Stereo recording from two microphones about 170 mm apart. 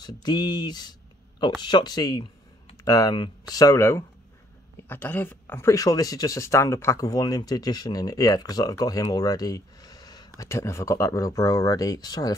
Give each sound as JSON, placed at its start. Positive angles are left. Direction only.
{"t": 0.0, "sound": "speech", "side_deg": 25}